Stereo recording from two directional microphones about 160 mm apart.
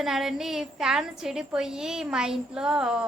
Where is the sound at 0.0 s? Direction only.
Centre (ahead or behind).